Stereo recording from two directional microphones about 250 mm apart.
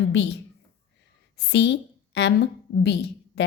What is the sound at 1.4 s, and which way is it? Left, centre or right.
A woman's voice, left.